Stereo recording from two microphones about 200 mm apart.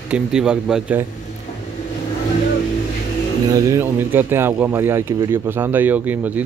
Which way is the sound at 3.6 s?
10° right (ahead or behind).